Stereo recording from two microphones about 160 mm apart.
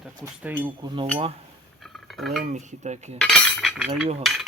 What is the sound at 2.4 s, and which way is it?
Speech, 50° right (ahead or behind).